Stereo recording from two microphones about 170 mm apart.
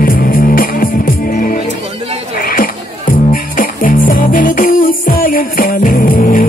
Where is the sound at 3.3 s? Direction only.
55° left (ahead or behind).